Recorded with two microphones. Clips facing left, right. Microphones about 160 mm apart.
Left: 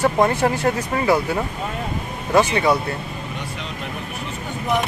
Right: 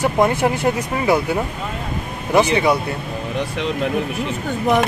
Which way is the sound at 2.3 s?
15° right (ahead or behind).